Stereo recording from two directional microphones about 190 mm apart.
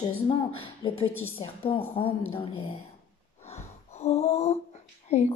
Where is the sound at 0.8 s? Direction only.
30° left (ahead or behind).